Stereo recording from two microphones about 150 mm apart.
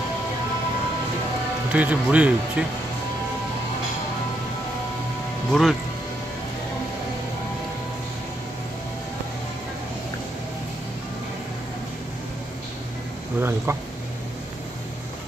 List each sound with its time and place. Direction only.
1.7 s speech: 10° right (ahead or behind)
5.5 s speech: centre (ahead or behind)
13.4 s speech: 15° right (ahead or behind)